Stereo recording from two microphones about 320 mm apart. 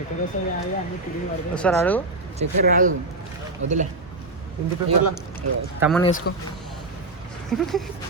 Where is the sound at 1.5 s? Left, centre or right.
Centre.